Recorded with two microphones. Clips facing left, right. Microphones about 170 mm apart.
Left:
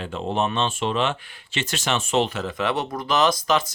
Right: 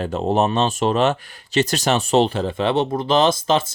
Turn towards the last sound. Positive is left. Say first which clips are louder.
# right 3 dB
turn(degrees=-25)  # may be behind; listen again after turning